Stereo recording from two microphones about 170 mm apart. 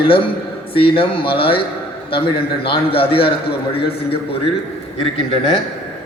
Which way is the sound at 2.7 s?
35° left (ahead or behind).